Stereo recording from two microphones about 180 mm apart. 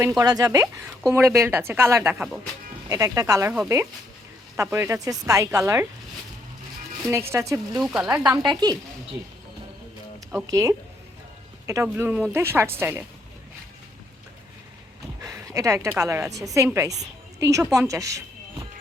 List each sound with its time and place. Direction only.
0.2 s a woman's voice: 20° right (ahead or behind)
2.9 s speech: 20° right (ahead or behind)
4.5 s a woman's voice: 15° right (ahead or behind)
7.1 s a woman's voice: 15° right (ahead or behind)
7.7 s a woman's voice: 5° right (ahead or behind)
8.4 s speech: 20° right (ahead or behind)
10.5 s a woman's voice: 15° right (ahead or behind)
15.2 s a woman's voice: 20° right (ahead or behind)